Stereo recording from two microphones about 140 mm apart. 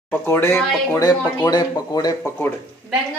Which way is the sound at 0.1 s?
15° left (ahead or behind).